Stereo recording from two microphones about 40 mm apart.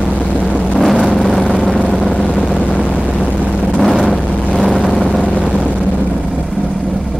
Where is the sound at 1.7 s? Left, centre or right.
Left.